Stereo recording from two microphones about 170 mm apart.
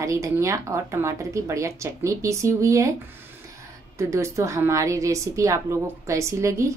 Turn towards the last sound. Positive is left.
turn(degrees=-15)  # may be behind; listen again after turning